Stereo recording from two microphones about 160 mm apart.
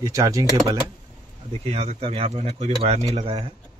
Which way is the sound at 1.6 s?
40° right (ahead or behind).